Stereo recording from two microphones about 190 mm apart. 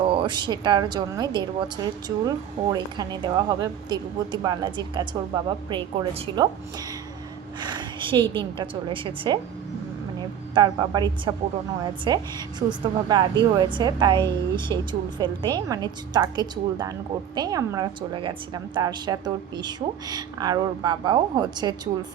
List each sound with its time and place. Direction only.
0.0 s a woman's voice: 25° right (ahead or behind)